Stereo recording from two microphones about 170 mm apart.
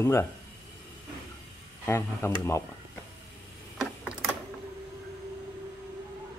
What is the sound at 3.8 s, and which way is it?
Typing, 5° right (ahead or behind).